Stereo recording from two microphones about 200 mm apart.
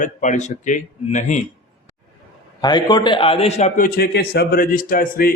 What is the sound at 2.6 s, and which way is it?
A man's voice, 20° left (ahead or behind).